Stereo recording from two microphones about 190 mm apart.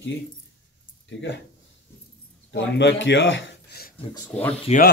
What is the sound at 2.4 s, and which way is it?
Speech, 70° left (ahead or behind).